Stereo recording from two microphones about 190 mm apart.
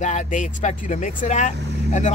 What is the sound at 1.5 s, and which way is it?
Speech, 60° right (ahead or behind).